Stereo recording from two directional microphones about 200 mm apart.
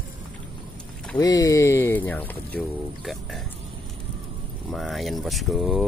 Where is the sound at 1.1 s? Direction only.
15° left (ahead or behind); by 3.4 s centre (ahead or behind).